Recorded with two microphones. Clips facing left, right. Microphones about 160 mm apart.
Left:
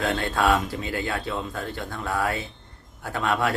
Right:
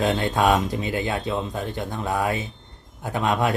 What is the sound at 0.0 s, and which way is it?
Speech, 20° right (ahead or behind).